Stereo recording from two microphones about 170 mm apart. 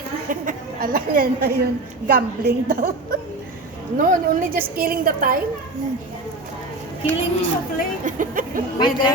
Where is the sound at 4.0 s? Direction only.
55° right (ahead or behind).